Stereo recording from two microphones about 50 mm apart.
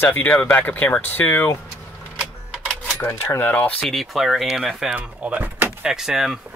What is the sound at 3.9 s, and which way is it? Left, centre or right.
Speech, centre.